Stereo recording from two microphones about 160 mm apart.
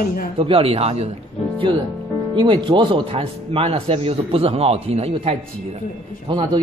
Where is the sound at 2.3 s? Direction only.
30° right (ahead or behind).